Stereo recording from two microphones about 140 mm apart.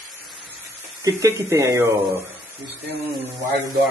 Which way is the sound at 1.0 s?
25° right (ahead or behind).